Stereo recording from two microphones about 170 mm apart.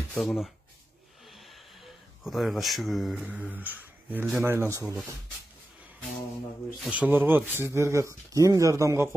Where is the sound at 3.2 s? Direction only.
10° right (ahead or behind).